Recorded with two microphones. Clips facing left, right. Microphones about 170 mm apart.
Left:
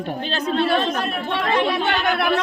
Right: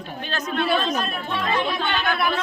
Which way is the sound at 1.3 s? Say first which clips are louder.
Left 4 dB; 75° left (ahead or behind).